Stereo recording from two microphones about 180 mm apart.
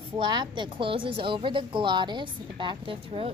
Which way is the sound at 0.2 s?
25° right (ahead or behind).